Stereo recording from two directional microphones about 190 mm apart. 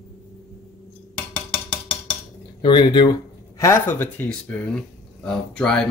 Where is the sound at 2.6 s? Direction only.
25° left (ahead or behind).